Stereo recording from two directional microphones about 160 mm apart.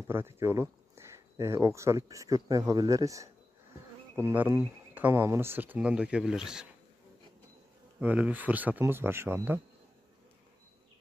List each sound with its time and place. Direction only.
0.1 s speech: 15° right (ahead or behind)
8.0 s speech: 10° right (ahead or behind)